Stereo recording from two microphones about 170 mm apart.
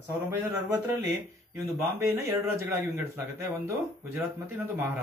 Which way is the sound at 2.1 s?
15° right (ahead or behind).